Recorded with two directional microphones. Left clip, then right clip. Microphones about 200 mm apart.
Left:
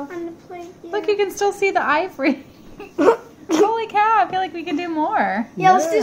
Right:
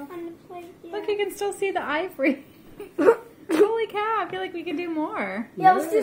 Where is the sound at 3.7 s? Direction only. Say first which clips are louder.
Left 9 dB; 15° left (ahead or behind).